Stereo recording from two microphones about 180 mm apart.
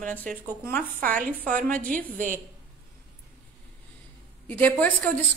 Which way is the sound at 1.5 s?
50° right (ahead or behind).